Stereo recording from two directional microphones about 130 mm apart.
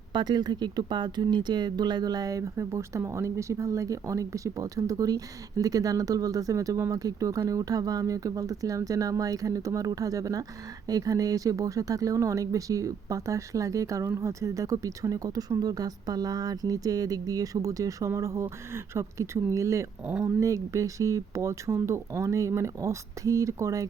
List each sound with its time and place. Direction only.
0.1 s speech: 35° right (ahead or behind)